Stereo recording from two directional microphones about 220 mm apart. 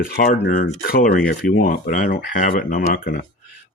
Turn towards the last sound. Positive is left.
turn(degrees=45)  # may be behind; listen again after turning